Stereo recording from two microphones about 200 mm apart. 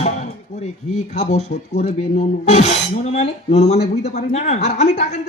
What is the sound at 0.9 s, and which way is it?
A man's voice, 35° left (ahead or behind).